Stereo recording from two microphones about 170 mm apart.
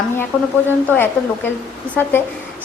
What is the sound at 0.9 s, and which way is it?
A woman's voice, 10° left (ahead or behind).